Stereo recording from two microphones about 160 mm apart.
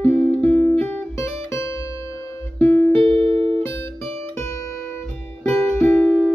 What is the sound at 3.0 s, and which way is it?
Music, 35° right (ahead or behind).